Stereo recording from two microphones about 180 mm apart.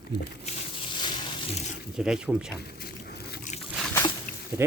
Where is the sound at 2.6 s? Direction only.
60° left (ahead or behind).